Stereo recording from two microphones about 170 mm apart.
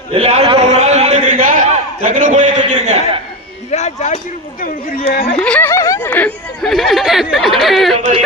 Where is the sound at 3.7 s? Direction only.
40° left (ahead or behind).